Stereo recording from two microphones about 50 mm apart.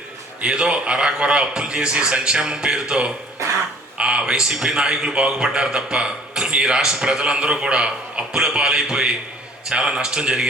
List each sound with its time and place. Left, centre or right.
0.4 s a man's voice: centre